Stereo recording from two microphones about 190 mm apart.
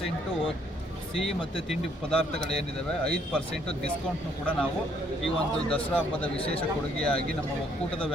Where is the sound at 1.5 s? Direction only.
Centre (ahead or behind).